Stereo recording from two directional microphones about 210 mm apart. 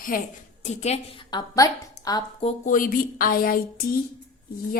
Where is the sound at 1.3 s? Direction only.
15° left (ahead or behind).